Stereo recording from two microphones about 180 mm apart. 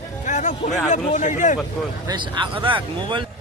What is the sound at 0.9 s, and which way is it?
Speech, 40° left (ahead or behind).